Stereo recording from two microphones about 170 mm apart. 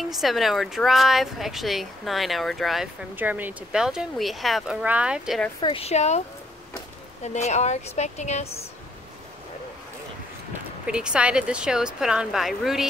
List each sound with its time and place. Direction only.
0.1 s speech: centre (ahead or behind)
5.6 s speech: 30° left (ahead or behind)
7.2 s speech: 40° left (ahead or behind)
10.9 s speech: 5° right (ahead or behind)